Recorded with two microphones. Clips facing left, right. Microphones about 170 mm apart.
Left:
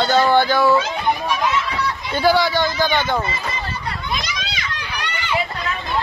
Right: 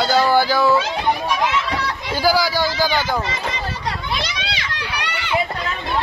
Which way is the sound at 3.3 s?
90° right.